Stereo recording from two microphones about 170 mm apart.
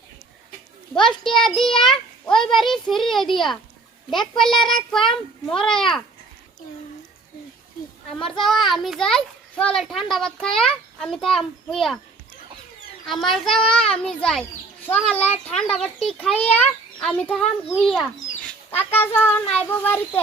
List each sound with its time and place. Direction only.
0.9 s a child's voice: centre (ahead or behind)
8.2 s a child's voice: centre (ahead or behind)
13.1 s a child's voice: centre (ahead or behind)
18.9 s a child's voice: 10° left (ahead or behind)